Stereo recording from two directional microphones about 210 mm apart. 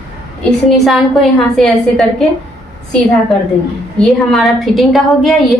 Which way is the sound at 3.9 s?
Centre (ahead or behind).